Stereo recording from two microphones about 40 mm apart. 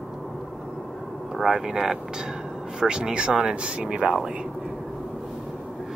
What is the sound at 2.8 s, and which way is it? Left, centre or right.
Speech, right.